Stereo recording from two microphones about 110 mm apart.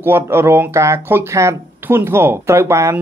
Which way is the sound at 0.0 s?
20° right (ahead or behind).